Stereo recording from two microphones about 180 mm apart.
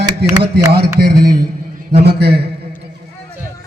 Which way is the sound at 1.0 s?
60° right (ahead or behind).